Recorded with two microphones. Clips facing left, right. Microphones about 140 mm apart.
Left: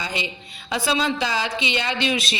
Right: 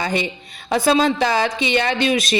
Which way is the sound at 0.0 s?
50° right (ahead or behind).